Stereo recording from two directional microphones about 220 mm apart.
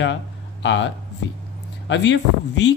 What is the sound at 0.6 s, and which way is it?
Speech, 55° left (ahead or behind).